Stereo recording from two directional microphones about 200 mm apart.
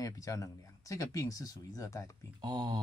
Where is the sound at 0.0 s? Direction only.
15° left (ahead or behind).